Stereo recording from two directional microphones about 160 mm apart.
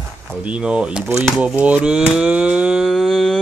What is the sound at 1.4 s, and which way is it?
Cattle, 5° right (ahead or behind).